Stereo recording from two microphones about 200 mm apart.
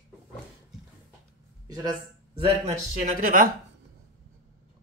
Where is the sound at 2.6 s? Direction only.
35° right (ahead or behind).